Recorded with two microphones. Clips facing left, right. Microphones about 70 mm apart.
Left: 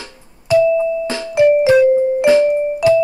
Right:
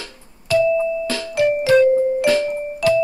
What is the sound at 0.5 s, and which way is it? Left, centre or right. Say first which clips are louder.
Music: left 4 dB; left.